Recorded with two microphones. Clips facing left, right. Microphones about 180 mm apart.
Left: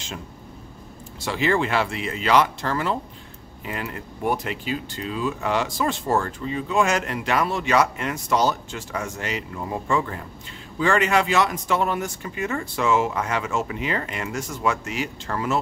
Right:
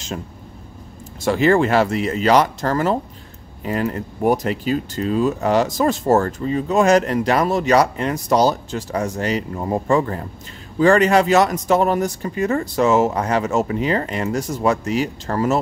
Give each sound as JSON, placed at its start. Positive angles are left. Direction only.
{"t": 1.2, "sound": "speech", "side_deg": -45}